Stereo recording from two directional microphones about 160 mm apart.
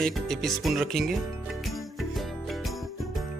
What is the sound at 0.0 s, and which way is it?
Speech, centre (ahead or behind).